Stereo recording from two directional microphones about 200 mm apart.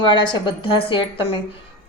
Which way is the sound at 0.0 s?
25° left (ahead or behind).